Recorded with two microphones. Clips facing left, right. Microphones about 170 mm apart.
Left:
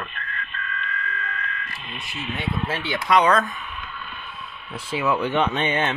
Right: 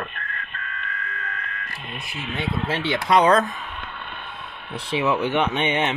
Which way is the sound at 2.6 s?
25° right (ahead or behind).